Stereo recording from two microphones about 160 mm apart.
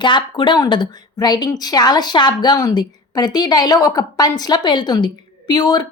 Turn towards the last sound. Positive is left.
turn(degrees=25)  # may be behind; listen again after turning